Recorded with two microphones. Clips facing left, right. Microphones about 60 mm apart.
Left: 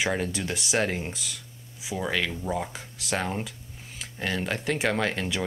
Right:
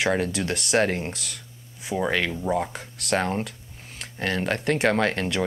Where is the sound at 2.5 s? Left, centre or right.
Centre.